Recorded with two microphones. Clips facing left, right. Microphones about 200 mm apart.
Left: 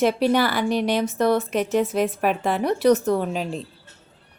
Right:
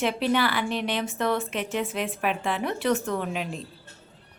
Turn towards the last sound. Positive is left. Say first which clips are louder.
# left 5 dB
turn(degrees=35)  # may be behind; listen again after turning